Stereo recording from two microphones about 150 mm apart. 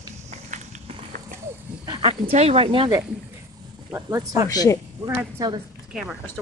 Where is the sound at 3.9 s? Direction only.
20° right (ahead or behind).